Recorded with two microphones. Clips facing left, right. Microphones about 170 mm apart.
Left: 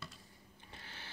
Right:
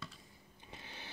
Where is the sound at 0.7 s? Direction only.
20° right (ahead or behind).